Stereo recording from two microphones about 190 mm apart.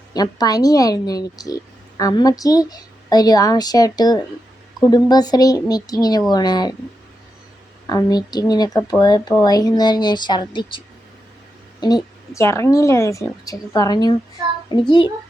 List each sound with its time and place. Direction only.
0.1 s speech: 20° left (ahead or behind)
7.9 s a woman's voice: 20° left (ahead or behind)